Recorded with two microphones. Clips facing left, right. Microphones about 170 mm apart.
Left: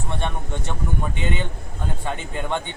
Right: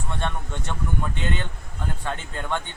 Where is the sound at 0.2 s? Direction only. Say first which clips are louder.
Left 2 dB; 15° left (ahead or behind).